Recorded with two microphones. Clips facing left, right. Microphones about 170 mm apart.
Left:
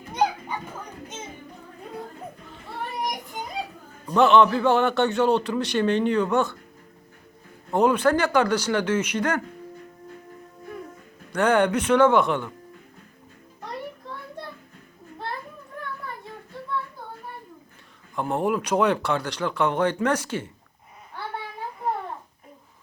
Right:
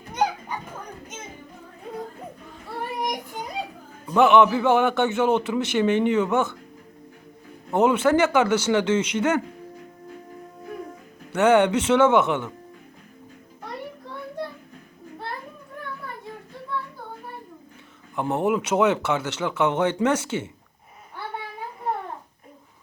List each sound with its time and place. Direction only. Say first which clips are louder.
4.1 s a man's voice: right 1 dB; 15° right (ahead or behind)
7.7 s speech: right 1 dB; 20° right (ahead or behind)
11.3 s speech: right 3 dB; 25° right (ahead or behind)
18.2 s speech: right 1 dB; 20° right (ahead or behind)